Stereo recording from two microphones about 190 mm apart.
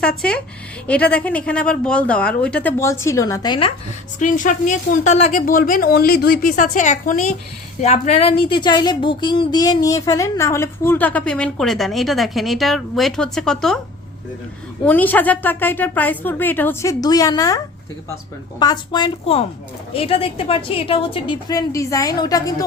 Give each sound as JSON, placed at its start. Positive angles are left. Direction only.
{"t": 0.2, "sound": "speech", "side_deg": 5}
{"t": 4.2, "sound": "a woman's voice", "side_deg": 40}
{"t": 14.8, "sound": "speech", "side_deg": 10}
{"t": 18.6, "sound": "a woman's voice", "side_deg": 20}